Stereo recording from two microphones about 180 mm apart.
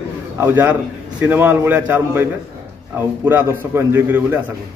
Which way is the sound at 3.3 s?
10° right (ahead or behind).